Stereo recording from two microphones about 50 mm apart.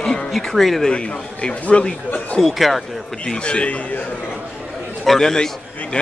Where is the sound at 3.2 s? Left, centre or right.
Centre.